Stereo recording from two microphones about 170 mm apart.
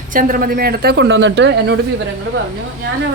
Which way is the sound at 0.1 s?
55° right (ahead or behind).